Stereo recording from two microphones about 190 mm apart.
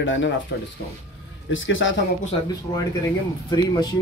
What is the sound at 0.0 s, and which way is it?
Speech, 80° left.